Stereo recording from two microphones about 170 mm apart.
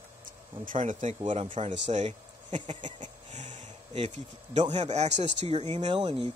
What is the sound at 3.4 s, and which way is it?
Speech, 40° right (ahead or behind).